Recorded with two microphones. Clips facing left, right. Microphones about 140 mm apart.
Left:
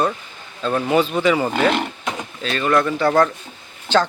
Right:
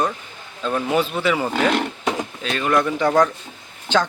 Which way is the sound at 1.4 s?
5° left (ahead or behind).